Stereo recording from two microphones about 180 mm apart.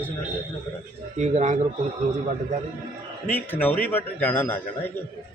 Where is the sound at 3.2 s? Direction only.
10° left (ahead or behind).